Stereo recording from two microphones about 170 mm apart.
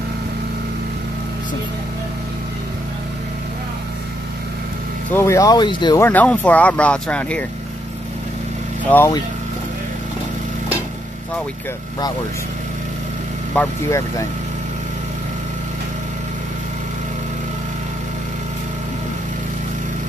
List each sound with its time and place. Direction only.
5.1 s speech: 15° left (ahead or behind)
5.9 s speech: 10° left (ahead or behind)
8.9 s speech: 10° left (ahead or behind)
13.6 s speech: 15° left (ahead or behind)